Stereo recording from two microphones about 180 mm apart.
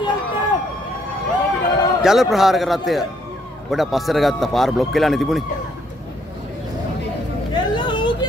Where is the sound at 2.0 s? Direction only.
Centre (ahead or behind).